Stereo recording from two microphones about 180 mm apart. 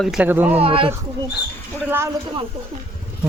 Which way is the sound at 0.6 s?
30° right (ahead or behind).